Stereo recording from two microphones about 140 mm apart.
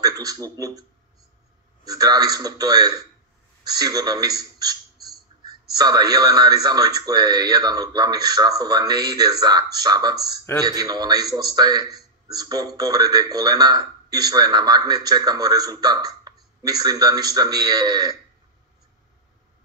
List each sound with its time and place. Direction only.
0.0 s a man's voice: 25° right (ahead or behind)
1.9 s a man's voice: 25° right (ahead or behind)
5.8 s a man's voice: 30° right (ahead or behind)